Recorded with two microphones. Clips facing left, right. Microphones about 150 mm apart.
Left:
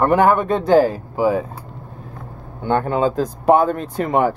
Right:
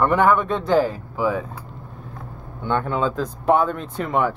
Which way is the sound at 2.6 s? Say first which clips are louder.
Left 4 dB; 40° left (ahead or behind).